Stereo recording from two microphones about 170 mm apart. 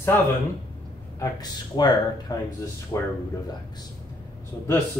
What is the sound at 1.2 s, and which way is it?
Speech, 25° left (ahead or behind).